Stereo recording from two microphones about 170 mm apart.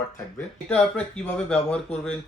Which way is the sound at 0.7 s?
5° left (ahead or behind).